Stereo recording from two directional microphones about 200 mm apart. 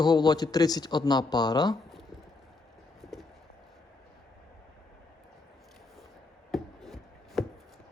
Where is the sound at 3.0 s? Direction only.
Centre (ahead or behind).